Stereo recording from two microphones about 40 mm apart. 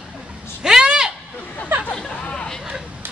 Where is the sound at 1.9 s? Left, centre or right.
Left.